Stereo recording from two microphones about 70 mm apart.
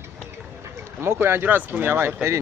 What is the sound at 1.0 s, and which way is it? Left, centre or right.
Speech, right.